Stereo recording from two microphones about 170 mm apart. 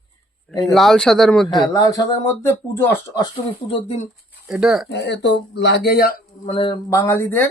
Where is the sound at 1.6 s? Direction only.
20° left (ahead or behind).